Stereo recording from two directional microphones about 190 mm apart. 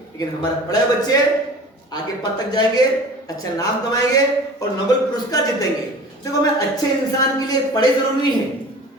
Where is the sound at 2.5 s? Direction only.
20° left (ahead or behind).